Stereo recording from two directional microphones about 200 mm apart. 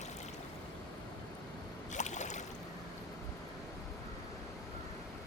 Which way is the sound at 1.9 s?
35° left (ahead or behind).